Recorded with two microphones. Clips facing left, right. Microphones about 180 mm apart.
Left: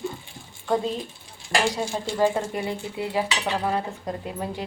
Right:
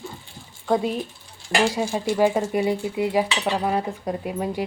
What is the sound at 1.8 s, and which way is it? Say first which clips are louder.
Speech: right 3 dB; 10° right (ahead or behind).